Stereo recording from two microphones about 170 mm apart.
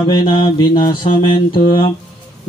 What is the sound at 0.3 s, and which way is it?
Mantra, 25° left (ahead or behind).